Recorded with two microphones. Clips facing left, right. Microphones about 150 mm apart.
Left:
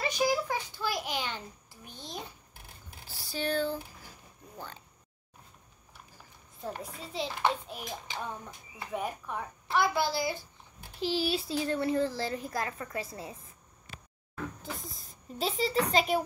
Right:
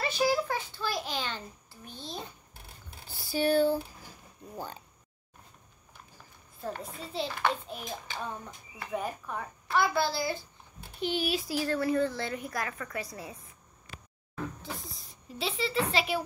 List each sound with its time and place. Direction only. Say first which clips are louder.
0.0 s a child's voice: right 1 dB; 15° left (ahead or behind)
1.9 s a sound: right 1 dB; 15° left (ahead or behind)
3.2 s a sound: right 6 dB; 5° right (ahead or behind)
7.2 s a child's voice: left 2 dB; 15° left (ahead or behind)
11.0 s speech: even; 30° left (ahead or behind)
14.7 s speech: even; centre (ahead or behind)
15.3 s a child's voice: left 2 dB; 40° left (ahead or behind)